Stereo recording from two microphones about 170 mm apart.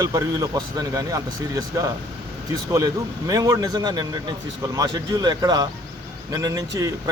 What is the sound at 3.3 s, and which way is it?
Speech, 20° right (ahead or behind).